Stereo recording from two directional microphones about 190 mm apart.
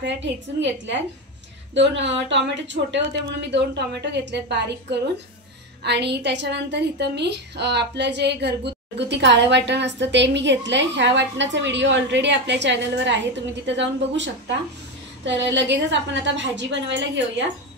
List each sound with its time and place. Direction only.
0.0 s a woman's voice: 70° right (ahead or behind)